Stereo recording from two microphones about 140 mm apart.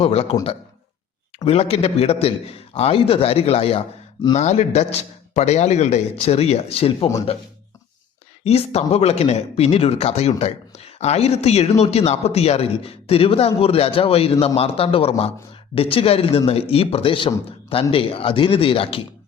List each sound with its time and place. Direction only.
0.0 s a man's voice: 45° left (ahead or behind)
1.5 s a man's voice: 45° left (ahead or behind)
8.4 s a man's voice: 45° left (ahead or behind)